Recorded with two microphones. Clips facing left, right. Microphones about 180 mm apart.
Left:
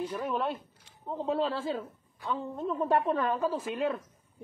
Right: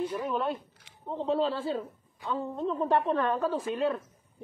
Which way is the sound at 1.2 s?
30° right (ahead or behind).